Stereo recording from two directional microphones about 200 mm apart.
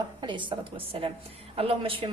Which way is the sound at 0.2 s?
25° right (ahead or behind).